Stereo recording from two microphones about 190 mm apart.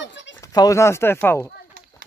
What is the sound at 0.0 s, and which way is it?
Bleat, 70° left (ahead or behind).